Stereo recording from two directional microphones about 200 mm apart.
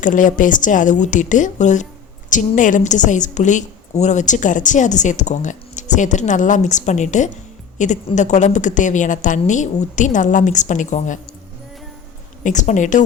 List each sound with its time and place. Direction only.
0.0 s a woman's voice: 40° left (ahead or behind)
12.4 s a woman's voice: 40° left (ahead or behind)